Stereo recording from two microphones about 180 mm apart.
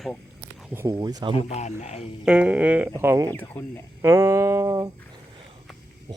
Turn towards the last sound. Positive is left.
turn(degrees=-20)  # may be behind; listen again after turning